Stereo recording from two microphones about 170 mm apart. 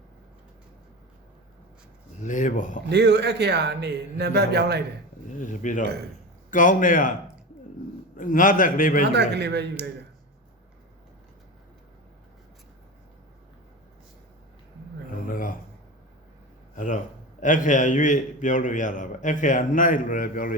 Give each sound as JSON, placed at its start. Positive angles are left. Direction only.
{"t": 2.2, "sound": "a man's voice", "side_deg": 50}
{"t": 2.8, "sound": "a man's voice", "side_deg": -90}
{"t": 5.4, "sound": "a man's voice", "side_deg": 50}
{"t": 8.1, "sound": "a man's voice", "side_deg": 50}
{"t": 9.1, "sound": "a man's voice", "side_deg": -90}
{"t": 15.3, "sound": "a man's voice", "side_deg": 55}
{"t": 16.7, "sound": "a man's voice", "side_deg": 50}